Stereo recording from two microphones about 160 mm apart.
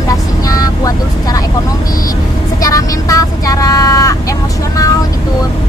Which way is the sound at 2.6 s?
20° left (ahead or behind).